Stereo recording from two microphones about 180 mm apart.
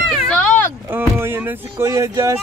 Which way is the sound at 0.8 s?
10° right (ahead or behind).